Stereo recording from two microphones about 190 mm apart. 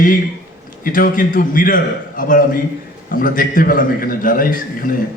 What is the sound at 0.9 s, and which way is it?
A man's voice, 45° left (ahead or behind).